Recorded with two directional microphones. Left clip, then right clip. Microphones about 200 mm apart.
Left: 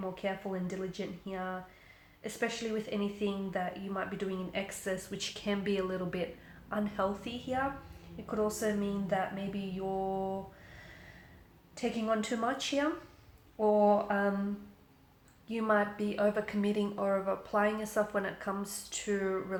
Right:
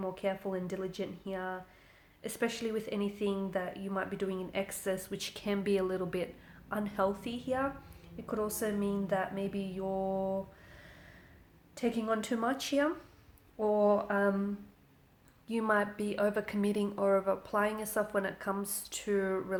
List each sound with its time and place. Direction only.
0.0 s a woman's voice: 45° right (ahead or behind)
11.7 s a woman's voice: 45° right (ahead or behind)
15.4 s a woman's voice: 45° right (ahead or behind)